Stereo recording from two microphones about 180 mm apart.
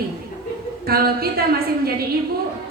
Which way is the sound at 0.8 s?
60° right (ahead or behind).